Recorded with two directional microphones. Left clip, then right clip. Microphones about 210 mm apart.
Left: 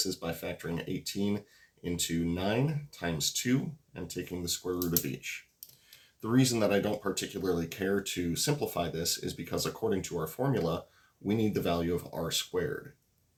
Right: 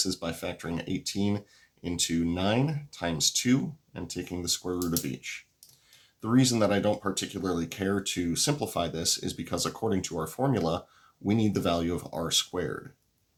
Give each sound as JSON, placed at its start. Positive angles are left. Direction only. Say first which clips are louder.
{"t": 0.0, "sound": "speech", "louder": "right 3 dB", "side_deg": -40}